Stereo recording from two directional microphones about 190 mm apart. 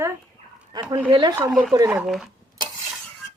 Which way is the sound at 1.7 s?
15° right (ahead or behind).